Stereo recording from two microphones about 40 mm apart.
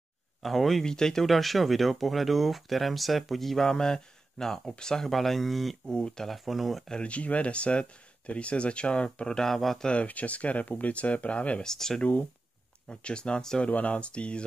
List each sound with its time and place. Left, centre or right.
0.4 s speech: centre
0.8 s speech: centre
1.2 s speech: centre
3.6 s speech: centre
5.9 s speech: centre
6.2 s speech: centre
7.0 s speech: left; by 9.6 s centre
9.9 s speech: left
11.6 s speech: centre
12.8 s speech: left
13.7 s speech: left